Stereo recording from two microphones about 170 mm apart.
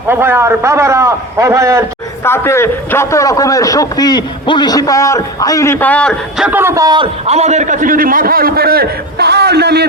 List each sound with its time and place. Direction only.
0.1 s a man's voice: 15° right (ahead or behind)
2.2 s a man's voice: 15° left (ahead or behind); by 7.1 s 25° right (ahead or behind)
7.3 s a man's voice: 40° right (ahead or behind); by 9.8 s 75° right (ahead or behind)